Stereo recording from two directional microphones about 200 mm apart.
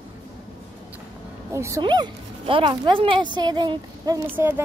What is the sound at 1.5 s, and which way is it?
Speech, 15° right (ahead or behind).